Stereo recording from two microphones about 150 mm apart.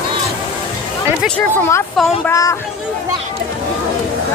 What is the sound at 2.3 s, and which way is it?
Speech, 20° left (ahead or behind).